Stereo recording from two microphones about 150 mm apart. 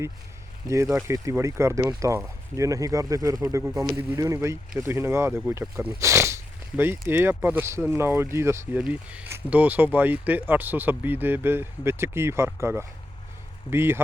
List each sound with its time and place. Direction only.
0.7 s speech: 20° right (ahead or behind)